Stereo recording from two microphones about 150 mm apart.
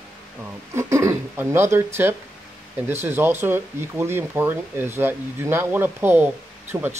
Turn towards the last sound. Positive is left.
turn(degrees=-15)  # may be behind; listen again after turning